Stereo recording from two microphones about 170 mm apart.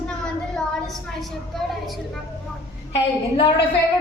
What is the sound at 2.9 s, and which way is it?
Speech, 35° left (ahead or behind).